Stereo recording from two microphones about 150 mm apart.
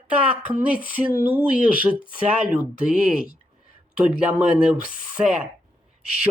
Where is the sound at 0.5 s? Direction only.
70° left (ahead or behind).